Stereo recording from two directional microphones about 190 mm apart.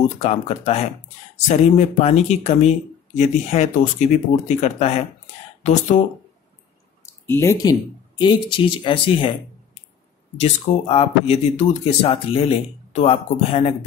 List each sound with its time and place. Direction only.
0.2 s speech: 35° left (ahead or behind)
2.0 s speech: 35° left (ahead or behind)
7.2 s speech: 15° left (ahead or behind)
8.2 s speech: 25° left (ahead or behind)
10.4 s speech: 30° left (ahead or behind)